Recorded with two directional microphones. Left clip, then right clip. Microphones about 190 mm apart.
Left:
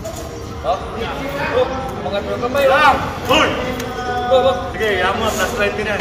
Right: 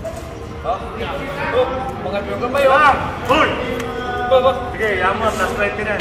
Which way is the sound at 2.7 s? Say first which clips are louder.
Even; 25° left (ahead or behind).